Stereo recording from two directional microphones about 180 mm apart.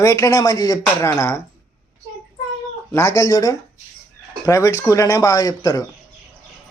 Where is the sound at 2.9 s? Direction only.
15° left (ahead or behind).